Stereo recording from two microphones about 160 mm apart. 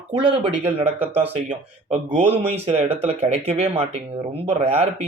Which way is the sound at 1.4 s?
50° right (ahead or behind).